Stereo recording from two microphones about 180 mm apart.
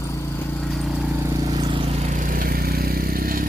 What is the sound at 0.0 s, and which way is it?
Vehicle, 15° left (ahead or behind).